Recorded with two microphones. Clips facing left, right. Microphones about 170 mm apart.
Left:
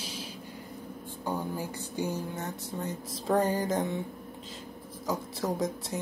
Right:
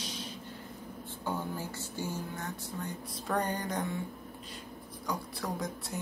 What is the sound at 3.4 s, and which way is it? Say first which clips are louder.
Mantra: left 6 dB; 5° left (ahead or behind).